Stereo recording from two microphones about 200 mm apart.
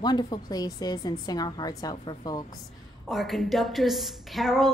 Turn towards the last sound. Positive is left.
turn(degrees=0)  # may be behind; listen again after turning